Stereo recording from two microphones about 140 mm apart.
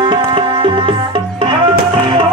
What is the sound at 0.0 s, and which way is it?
Music, 35° right (ahead or behind).